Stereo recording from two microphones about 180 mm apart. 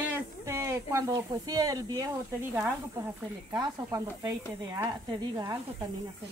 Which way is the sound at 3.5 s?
20° right (ahead or behind).